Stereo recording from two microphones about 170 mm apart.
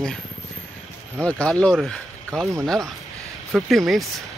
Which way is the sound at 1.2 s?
5° left (ahead or behind).